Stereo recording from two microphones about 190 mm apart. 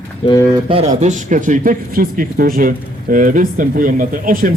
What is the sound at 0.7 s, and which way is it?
Speech, 35° right (ahead or behind).